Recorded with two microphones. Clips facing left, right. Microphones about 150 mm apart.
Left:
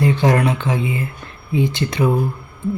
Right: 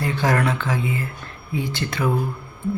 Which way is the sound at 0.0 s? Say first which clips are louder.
Left 5 dB; 20° left (ahead or behind).